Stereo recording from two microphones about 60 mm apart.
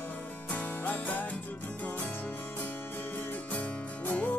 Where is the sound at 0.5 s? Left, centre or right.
Left.